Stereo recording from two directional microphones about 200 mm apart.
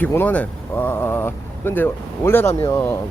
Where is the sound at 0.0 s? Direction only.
10° left (ahead or behind).